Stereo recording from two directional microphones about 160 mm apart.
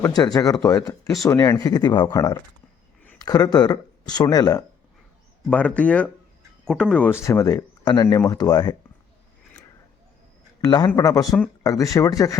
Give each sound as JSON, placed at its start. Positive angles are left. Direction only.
{"t": 0.0, "sound": "speech", "side_deg": 25}
{"t": 5.5, "sound": "speech", "side_deg": 10}
{"t": 10.6, "sound": "speech", "side_deg": 25}